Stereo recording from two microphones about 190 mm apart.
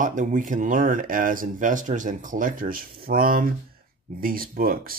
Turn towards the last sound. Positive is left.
turn(degrees=-50)  # may be behind; listen again after turning